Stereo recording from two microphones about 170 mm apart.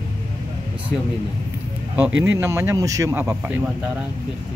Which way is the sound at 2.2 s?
15° right (ahead or behind).